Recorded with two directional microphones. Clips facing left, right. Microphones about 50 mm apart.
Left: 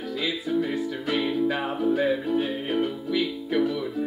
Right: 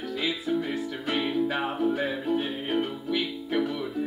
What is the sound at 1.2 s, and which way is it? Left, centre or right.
Music, centre.